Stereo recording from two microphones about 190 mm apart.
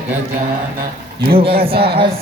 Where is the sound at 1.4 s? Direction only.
30° right (ahead or behind).